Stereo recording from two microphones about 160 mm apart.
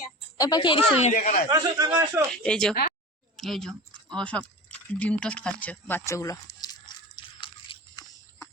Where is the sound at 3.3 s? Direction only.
Centre (ahead or behind); by 8.0 s 30° left (ahead or behind).